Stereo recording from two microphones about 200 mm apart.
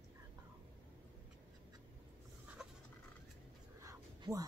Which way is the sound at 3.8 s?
15° right (ahead or behind).